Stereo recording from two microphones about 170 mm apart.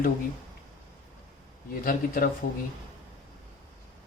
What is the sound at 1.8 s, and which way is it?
Speech, 55° left (ahead or behind).